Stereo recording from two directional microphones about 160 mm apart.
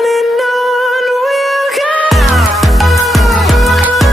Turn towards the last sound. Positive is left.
turn(degrees=0)  # may be behind; listen again after turning